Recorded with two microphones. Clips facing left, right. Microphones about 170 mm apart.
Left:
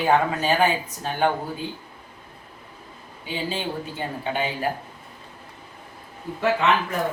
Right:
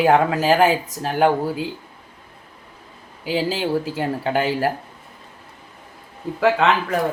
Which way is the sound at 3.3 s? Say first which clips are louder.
Right 7 dB; 90° right.